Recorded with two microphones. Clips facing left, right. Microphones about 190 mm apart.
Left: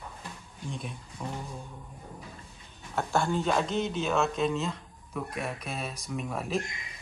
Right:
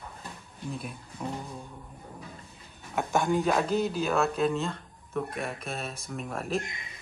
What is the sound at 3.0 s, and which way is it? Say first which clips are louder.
Speech: right 2 dB; 15° right (ahead or behind).